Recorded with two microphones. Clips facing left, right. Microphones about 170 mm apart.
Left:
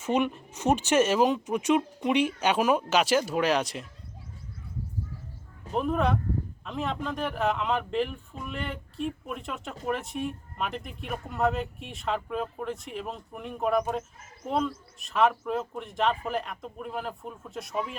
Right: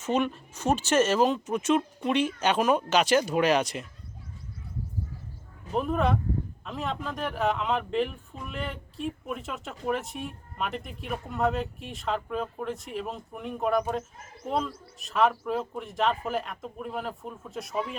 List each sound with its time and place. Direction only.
0.0 s speech: 15° left (ahead or behind)
5.7 s speech: centre (ahead or behind)